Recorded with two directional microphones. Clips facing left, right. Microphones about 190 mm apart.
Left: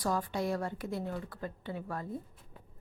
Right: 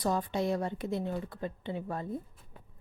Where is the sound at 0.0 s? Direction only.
20° right (ahead or behind).